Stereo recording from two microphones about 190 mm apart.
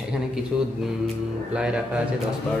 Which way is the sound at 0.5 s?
Centre (ahead or behind).